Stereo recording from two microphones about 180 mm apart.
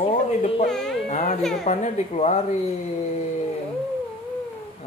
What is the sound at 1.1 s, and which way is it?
A woman's voice, 40° left (ahead or behind).